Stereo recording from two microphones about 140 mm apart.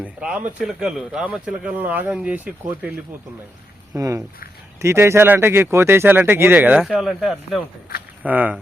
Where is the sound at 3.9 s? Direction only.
25° right (ahead or behind).